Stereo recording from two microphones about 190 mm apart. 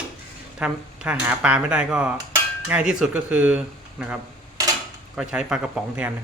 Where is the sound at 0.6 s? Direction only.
5° right (ahead or behind).